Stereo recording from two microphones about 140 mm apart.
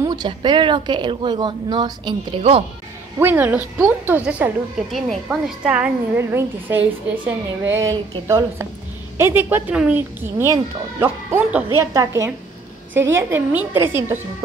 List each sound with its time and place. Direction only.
0.0 s speech: 30° right (ahead or behind)
3.2 s a woman's voice: 15° right (ahead or behind)
9.2 s a woman's voice: 15° right (ahead or behind)
10.4 s a woman's voice: 20° right (ahead or behind)